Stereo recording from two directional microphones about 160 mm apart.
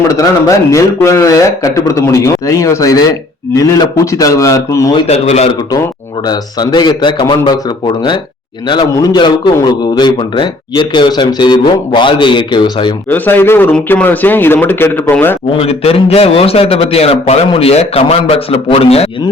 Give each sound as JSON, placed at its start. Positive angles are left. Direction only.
{"t": 0.1, "sound": "speech", "side_deg": 20}
{"t": 5.0, "sound": "a man's voice", "side_deg": 40}
{"t": 6.2, "sound": "speech", "side_deg": 25}
{"t": 13.1, "sound": "a man's voice", "side_deg": 10}
{"t": 15.5, "sound": "a man's voice", "side_deg": 35}